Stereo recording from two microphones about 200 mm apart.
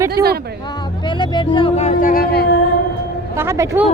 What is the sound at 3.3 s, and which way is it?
Speech, 15° right (ahead or behind).